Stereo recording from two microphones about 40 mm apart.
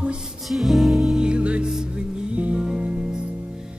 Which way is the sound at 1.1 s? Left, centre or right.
Right.